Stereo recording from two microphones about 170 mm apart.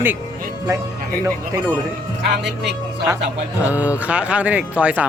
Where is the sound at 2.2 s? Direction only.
90° right.